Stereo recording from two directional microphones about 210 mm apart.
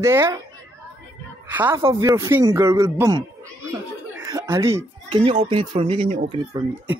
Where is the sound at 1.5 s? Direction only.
10° right (ahead or behind).